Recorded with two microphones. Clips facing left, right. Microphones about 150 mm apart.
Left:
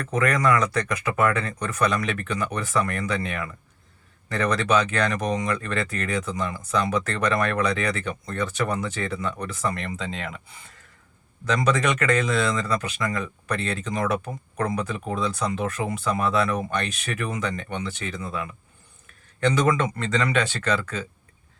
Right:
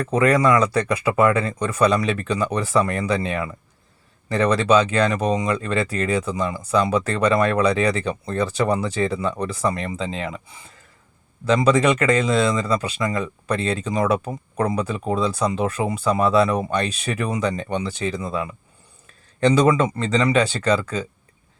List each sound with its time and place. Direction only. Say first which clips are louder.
0.0 s speech: right 5 dB; 30° right (ahead or behind)
11.4 s speech: right 6 dB; 30° right (ahead or behind)
19.6 s speech: right 5 dB; 30° right (ahead or behind)